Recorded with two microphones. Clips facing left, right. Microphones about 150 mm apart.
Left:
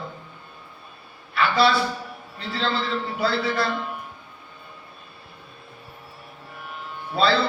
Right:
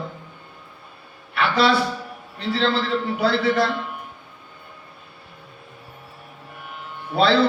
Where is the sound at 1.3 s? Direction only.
75° right (ahead or behind).